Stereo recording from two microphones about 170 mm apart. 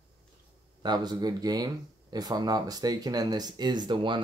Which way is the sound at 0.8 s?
25° right (ahead or behind).